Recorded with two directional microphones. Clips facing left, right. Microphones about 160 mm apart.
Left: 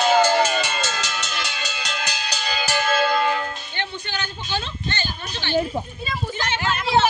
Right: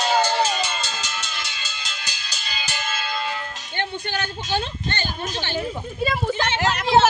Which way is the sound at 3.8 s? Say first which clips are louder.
Right 4 dB; 50° right (ahead or behind).